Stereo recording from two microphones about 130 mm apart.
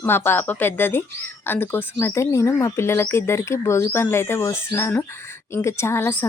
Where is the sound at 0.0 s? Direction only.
15° left (ahead or behind).